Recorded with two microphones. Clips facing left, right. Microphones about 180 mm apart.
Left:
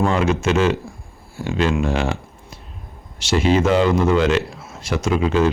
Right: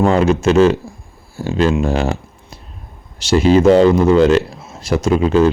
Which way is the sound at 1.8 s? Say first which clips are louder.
Right 4 dB; 40° right (ahead or behind).